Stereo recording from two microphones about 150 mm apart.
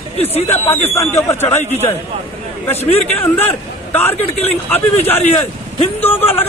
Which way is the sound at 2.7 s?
40° left (ahead or behind).